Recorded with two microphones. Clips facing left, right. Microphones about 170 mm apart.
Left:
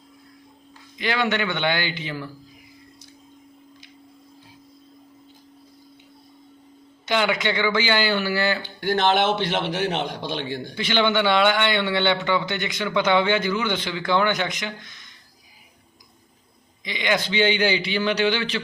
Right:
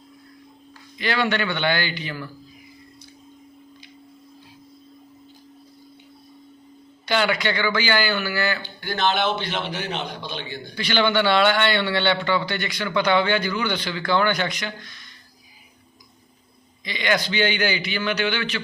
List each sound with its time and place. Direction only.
0.9 s a man's voice: 15° left (ahead or behind)
7.0 s a man's voice: 20° left (ahead or behind)
9.0 s a man's voice: 75° left (ahead or behind)
10.8 s a man's voice: 20° left (ahead or behind)
16.8 s a man's voice: 20° left (ahead or behind); by 18.6 s 35° left (ahead or behind)